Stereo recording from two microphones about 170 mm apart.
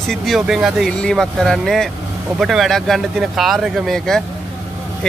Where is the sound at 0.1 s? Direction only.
Centre (ahead or behind).